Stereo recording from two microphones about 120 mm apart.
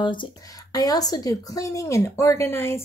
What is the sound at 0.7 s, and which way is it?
A woman's voice, 30° left (ahead or behind).